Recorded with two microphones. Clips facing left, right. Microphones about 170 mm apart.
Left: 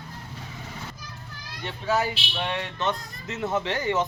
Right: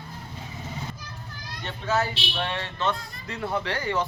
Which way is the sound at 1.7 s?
15° left (ahead or behind).